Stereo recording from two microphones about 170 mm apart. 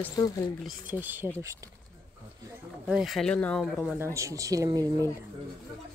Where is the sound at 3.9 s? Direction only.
15° right (ahead or behind).